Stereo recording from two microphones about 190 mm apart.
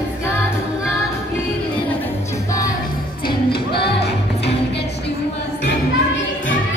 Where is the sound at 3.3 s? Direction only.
55° left (ahead or behind).